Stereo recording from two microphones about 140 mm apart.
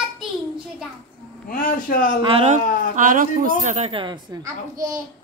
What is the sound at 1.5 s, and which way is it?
Speech, 85° left.